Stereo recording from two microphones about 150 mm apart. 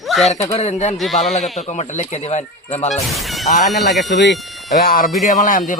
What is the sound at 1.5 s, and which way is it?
Speech, 50° left (ahead or behind).